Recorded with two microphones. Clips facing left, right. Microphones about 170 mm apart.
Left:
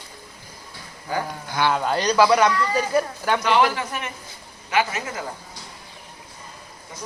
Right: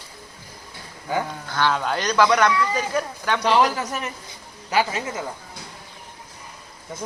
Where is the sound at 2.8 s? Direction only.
10° left (ahead or behind).